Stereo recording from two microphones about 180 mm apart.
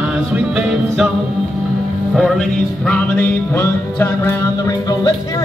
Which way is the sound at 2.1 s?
Centre (ahead or behind).